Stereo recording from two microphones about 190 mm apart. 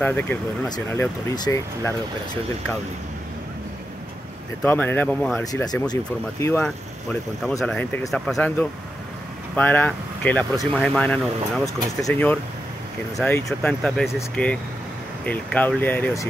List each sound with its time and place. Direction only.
0.0 s speech: 10° left (ahead or behind)
4.6 s speech: 10° left (ahead or behind)
5.4 s speech: 20° left (ahead or behind)
6.4 s speech: 5° left (ahead or behind)